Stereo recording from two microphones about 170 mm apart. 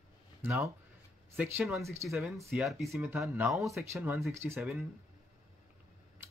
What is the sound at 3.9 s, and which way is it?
Speech, 10° right (ahead or behind).